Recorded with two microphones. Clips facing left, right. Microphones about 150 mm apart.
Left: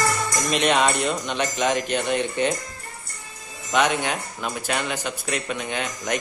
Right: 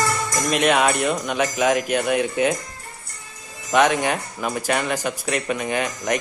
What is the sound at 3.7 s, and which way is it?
Speech, centre (ahead or behind).